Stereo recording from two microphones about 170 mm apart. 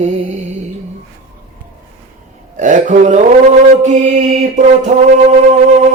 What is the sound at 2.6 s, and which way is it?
Mantra, 45° right (ahead or behind).